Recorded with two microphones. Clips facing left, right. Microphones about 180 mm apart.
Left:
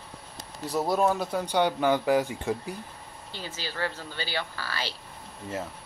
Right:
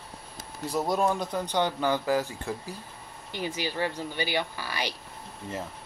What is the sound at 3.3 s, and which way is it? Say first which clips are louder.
Speech: right 6 dB; 15° right (ahead or behind).